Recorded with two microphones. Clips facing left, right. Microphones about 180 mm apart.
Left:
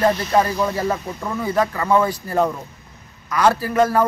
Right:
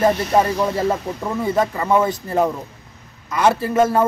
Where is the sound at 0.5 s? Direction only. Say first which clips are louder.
Right 2 dB; 25° right (ahead or behind).